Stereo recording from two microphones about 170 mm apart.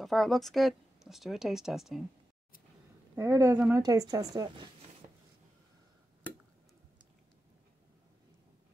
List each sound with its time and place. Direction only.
0.0 s speech: centre (ahead or behind)
3.2 s speech: 15° right (ahead or behind)